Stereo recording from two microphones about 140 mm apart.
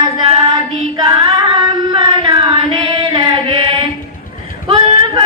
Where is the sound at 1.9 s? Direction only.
35° right (ahead or behind).